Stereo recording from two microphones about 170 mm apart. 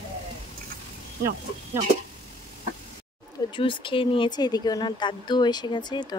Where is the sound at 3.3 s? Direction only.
30° left (ahead or behind).